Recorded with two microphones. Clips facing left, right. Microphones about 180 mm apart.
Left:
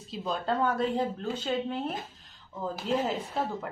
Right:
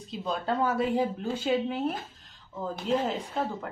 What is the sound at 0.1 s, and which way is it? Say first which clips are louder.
Speech: even; centre (ahead or behind).